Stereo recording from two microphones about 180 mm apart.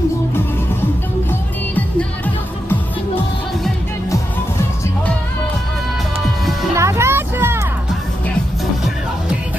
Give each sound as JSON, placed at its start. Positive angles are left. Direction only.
{"t": 1.8, "sound": "music", "side_deg": 10}
{"t": 6.7, "sound": "music", "side_deg": -15}